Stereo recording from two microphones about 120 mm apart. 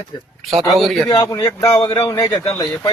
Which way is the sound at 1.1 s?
30° left (ahead or behind).